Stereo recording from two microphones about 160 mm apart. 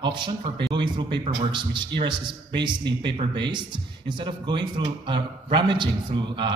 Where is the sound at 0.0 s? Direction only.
30° right (ahead or behind).